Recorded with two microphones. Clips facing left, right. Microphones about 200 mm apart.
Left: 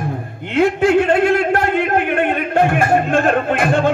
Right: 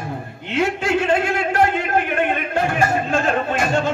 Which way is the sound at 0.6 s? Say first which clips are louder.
Left 7 dB; 55° left (ahead or behind).